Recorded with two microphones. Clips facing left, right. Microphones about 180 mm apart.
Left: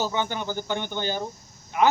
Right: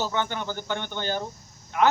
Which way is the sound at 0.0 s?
10° left (ahead or behind).